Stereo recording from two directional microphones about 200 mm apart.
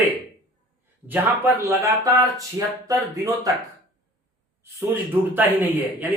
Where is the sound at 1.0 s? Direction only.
10° right (ahead or behind).